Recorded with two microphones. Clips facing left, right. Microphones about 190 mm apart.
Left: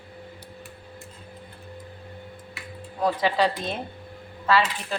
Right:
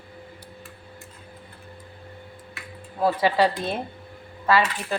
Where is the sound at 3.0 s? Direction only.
10° right (ahead or behind).